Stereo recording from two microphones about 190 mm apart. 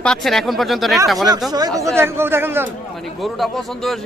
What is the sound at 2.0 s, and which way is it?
Speech, 10° right (ahead or behind).